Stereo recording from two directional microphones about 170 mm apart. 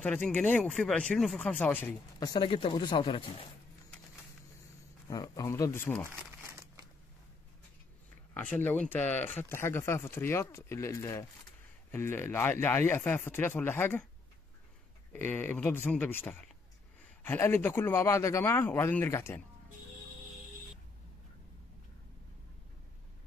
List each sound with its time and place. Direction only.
0.0 s speech: 10° left (ahead or behind)
2.1 s speech: 25° left (ahead or behind)
5.1 s speech: 20° left (ahead or behind)
6.1 s crumpling: 15° right (ahead or behind)
8.4 s speech: 10° left (ahead or behind)
15.1 s speech: 10° left (ahead or behind)